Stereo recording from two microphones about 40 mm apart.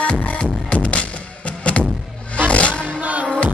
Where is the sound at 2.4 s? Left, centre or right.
Left.